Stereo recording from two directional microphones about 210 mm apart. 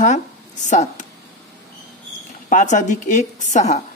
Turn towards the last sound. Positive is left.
turn(degrees=35)  # may be behind; listen again after turning